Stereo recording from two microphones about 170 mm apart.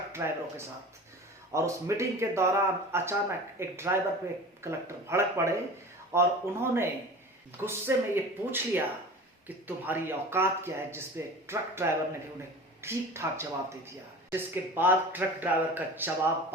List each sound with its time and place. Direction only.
0.1 s speech: 15° right (ahead or behind)